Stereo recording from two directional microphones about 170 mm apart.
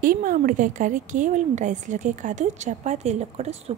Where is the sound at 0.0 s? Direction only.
55° right (ahead or behind).